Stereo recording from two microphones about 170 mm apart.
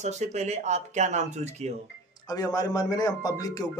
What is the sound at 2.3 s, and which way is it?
Speech, 20° left (ahead or behind).